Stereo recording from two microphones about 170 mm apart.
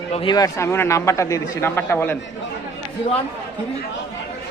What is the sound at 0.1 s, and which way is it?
A man's voice, 30° left (ahead or behind).